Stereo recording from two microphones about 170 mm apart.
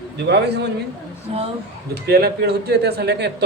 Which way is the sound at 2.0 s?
70° right (ahead or behind).